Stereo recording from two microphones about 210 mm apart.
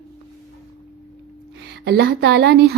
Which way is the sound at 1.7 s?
50° right (ahead or behind).